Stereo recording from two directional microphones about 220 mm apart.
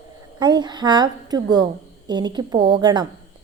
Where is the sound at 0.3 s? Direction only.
20° right (ahead or behind).